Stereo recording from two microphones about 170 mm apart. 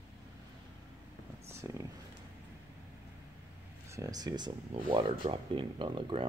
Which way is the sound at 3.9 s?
20° right (ahead or behind).